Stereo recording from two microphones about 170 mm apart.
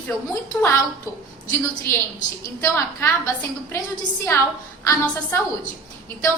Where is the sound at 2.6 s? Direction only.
15° left (ahead or behind).